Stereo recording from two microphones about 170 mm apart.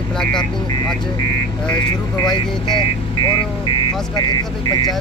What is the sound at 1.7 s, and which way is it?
Speech, 25° left (ahead or behind).